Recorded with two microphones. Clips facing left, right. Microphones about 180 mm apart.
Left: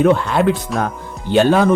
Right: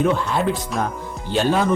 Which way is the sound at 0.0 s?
65° left (ahead or behind).